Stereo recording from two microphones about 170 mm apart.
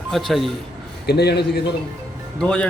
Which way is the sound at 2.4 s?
5° left (ahead or behind).